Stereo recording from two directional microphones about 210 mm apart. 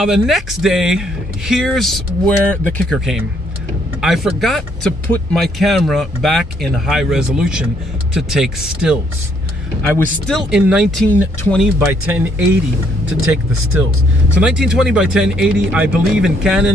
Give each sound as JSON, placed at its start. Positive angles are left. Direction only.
{"t": 0.0, "sound": "speech", "side_deg": 0}
{"t": 9.9, "sound": "speech", "side_deg": 0}
{"t": 11.6, "sound": "speech", "side_deg": -5}
{"t": 14.3, "sound": "speech", "side_deg": -5}